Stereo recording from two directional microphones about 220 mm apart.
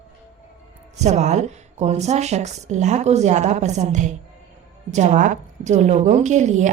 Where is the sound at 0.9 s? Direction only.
30° right (ahead or behind).